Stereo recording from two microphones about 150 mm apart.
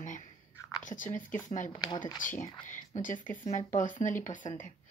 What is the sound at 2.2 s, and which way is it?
A woman's voice, 60° left (ahead or behind).